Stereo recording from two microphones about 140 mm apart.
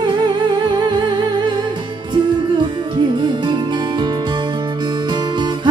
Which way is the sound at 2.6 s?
30° right (ahead or behind).